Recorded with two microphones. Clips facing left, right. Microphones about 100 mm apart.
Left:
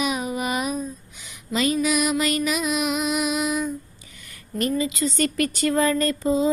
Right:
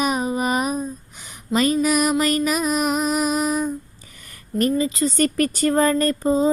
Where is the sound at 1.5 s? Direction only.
40° right (ahead or behind).